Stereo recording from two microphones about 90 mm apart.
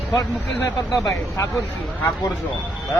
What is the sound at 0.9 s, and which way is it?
Speech, 35° left (ahead or behind).